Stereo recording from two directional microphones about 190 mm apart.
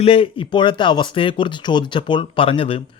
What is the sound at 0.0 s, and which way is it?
Speech, 30° left (ahead or behind).